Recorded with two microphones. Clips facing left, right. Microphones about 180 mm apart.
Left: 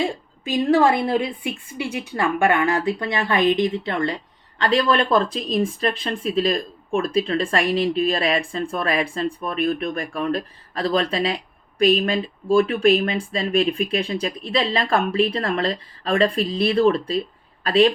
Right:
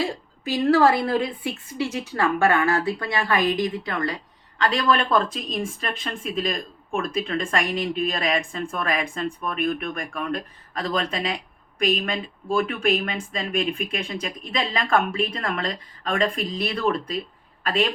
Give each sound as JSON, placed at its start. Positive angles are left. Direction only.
{"t": 0.0, "sound": "a woman's voice", "side_deg": 20}